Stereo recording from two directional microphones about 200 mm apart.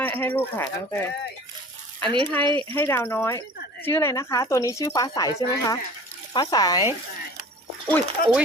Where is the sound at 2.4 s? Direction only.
25° right (ahead or behind).